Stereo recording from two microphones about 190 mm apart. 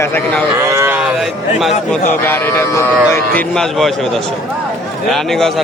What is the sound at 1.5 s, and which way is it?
Speech, centre (ahead or behind).